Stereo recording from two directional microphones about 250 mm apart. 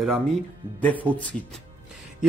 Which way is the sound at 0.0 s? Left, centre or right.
Centre.